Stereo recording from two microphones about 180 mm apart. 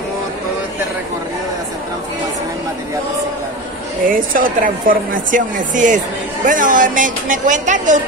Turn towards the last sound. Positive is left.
turn(degrees=-45)  # may be behind; listen again after turning